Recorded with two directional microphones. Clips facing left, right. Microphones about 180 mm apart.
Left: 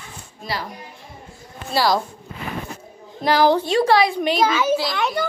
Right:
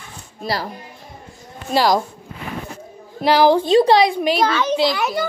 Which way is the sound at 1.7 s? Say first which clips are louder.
Right 3 dB; 15° right (ahead or behind).